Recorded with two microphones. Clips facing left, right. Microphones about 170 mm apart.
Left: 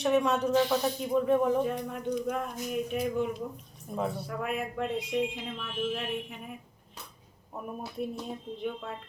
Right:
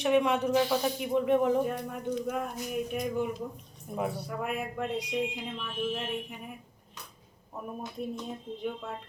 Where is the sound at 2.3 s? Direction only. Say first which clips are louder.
Left 1 dB; 5° right (ahead or behind).